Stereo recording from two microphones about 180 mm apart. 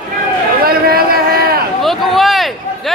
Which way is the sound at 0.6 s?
55° right (ahead or behind).